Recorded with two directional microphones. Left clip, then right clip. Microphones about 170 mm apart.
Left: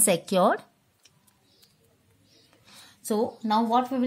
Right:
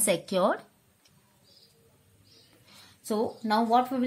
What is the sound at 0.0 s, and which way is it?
Speech, 30° left (ahead or behind).